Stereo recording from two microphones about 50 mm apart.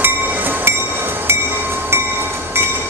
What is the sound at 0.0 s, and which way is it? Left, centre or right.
Train, right.